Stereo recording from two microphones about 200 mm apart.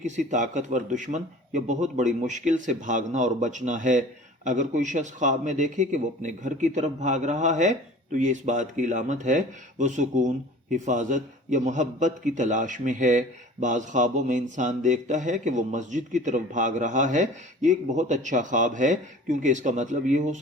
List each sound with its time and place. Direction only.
0.0 s a man's voice: 35° right (ahead or behind)